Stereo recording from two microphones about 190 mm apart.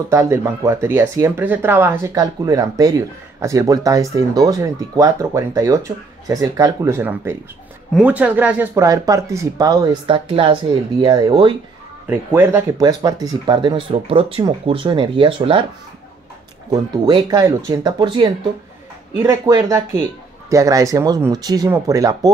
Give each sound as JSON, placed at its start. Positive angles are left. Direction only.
{"t": 0.1, "sound": "speech", "side_deg": -15}
{"t": 12.1, "sound": "speech", "side_deg": -10}
{"t": 16.7, "sound": "speech", "side_deg": -20}